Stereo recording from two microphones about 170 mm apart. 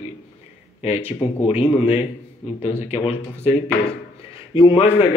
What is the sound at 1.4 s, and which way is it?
Speech, 40° left (ahead or behind).